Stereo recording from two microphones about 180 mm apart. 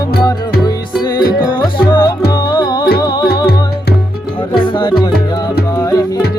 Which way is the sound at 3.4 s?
60° left (ahead or behind).